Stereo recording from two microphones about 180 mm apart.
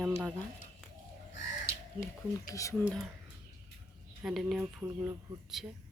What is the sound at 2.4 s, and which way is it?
Speech, 15° left (ahead or behind).